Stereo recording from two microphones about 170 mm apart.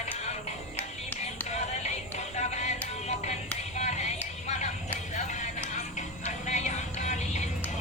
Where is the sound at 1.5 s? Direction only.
40° left (ahead or behind).